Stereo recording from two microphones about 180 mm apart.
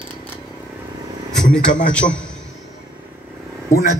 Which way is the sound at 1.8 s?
5° left (ahead or behind).